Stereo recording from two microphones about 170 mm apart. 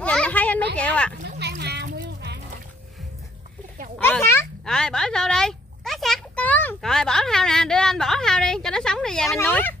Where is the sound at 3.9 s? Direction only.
10° left (ahead or behind).